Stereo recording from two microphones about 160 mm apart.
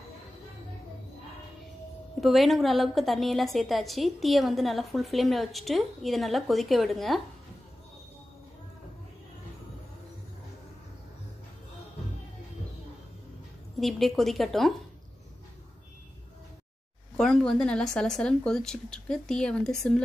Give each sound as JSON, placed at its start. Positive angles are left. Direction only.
{"t": 2.1, "sound": "a woman's voice", "side_deg": 0}
{"t": 13.7, "sound": "a woman's voice", "side_deg": 0}
{"t": 17.2, "sound": "a woman's voice", "side_deg": 5}